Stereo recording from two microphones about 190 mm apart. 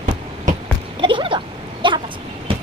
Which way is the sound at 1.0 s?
25° right (ahead or behind).